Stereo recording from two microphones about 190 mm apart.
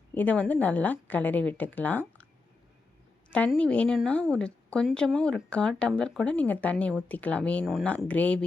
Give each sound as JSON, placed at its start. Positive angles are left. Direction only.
{"t": 0.1, "sound": "speech", "side_deg": 10}
{"t": 3.2, "sound": "a woman's voice", "side_deg": 5}